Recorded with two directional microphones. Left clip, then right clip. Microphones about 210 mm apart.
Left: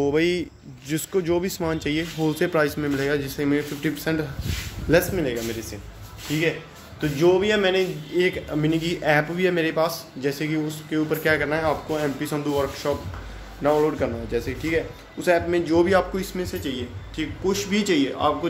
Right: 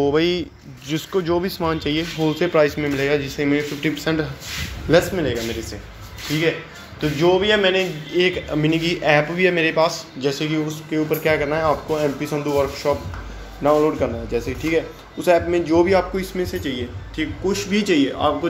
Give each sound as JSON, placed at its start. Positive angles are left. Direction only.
{"t": 0.0, "sound": "a man's voice", "side_deg": 15}
{"t": 7.0, "sound": "a man's voice", "side_deg": 20}